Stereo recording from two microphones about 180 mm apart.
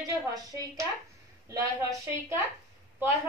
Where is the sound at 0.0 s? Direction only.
20° right (ahead or behind).